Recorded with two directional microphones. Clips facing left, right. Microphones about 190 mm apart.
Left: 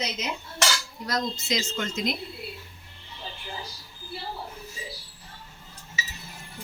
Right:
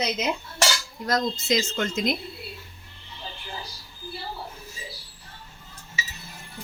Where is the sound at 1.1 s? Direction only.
50° right (ahead or behind).